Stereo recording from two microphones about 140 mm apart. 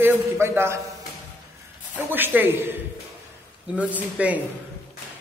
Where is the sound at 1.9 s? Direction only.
15° right (ahead or behind).